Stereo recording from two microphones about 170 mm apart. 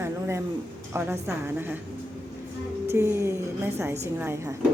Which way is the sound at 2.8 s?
15° right (ahead or behind).